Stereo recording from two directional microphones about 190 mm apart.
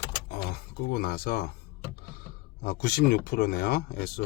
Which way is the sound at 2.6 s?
55° left (ahead or behind).